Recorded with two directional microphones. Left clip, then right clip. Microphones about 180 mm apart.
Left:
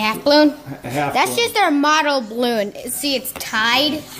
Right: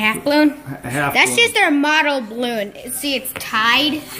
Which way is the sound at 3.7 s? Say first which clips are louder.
Right 1 dB; 90° left.